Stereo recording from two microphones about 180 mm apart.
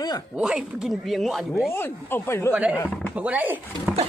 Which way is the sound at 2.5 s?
10° right (ahead or behind).